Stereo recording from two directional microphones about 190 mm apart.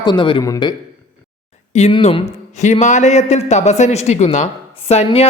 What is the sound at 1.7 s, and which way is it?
A man's voice, 35° left (ahead or behind).